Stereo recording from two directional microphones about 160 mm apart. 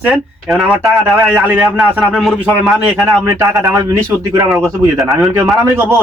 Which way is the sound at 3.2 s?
20° right (ahead or behind).